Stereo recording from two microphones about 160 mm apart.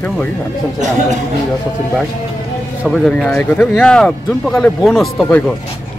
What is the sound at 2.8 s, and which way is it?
Speech, centre (ahead or behind).